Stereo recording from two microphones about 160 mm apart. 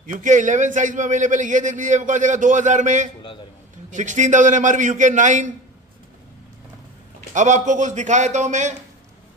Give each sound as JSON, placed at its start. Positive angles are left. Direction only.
{"t": 0.0, "sound": "a man's voice", "side_deg": -55}
{"t": 7.3, "sound": "a man's voice", "side_deg": -50}